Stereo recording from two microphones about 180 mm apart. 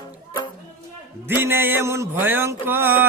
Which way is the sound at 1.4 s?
10° right (ahead or behind).